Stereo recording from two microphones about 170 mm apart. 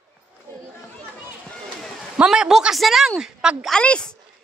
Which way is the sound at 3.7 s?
5° left (ahead or behind).